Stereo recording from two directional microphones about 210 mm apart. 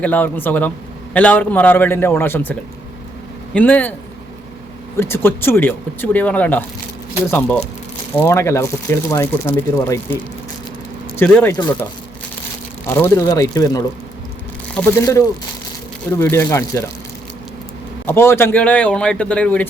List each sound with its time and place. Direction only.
0.0 s speech: 10° left (ahead or behind)
4.9 s speech: 10° left (ahead or behind)
11.2 s speech: 10° left (ahead or behind)
18.0 s speech: 10° left (ahead or behind)